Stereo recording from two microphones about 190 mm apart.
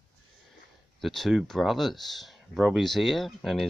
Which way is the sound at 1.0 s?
Centre (ahead or behind).